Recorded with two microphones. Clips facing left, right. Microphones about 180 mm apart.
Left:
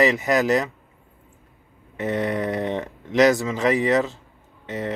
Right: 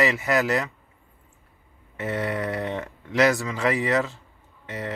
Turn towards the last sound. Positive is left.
turn(degrees=20)  # may be behind; listen again after turning